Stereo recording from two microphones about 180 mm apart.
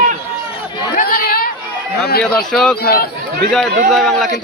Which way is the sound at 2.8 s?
55° left (ahead or behind).